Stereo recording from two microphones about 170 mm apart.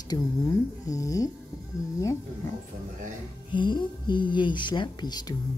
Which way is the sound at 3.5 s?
30° left (ahead or behind).